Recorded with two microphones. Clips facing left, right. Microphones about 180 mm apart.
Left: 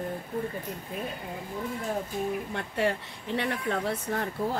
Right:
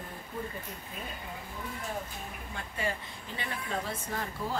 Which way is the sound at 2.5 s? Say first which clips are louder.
Left 4 dB; 70° left (ahead or behind).